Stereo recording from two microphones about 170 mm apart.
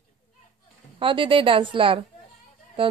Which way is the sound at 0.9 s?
30° right (ahead or behind).